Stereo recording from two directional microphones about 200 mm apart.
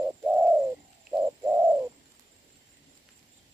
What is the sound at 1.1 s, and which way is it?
Bird, 10° right (ahead or behind).